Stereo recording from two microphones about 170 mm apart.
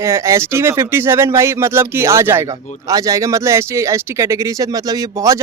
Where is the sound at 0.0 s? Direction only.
15° right (ahead or behind).